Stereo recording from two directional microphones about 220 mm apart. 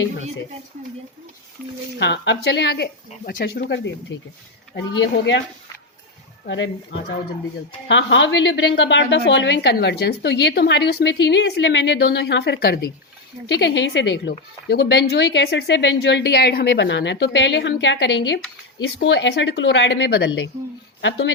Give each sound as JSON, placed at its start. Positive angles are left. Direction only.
{"t": 2.0, "sound": "a woman's voice", "side_deg": 50}
{"t": 6.4, "sound": "a woman's voice", "side_deg": 55}